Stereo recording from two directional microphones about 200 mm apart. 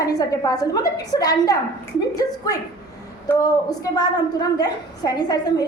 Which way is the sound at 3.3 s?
20° left (ahead or behind).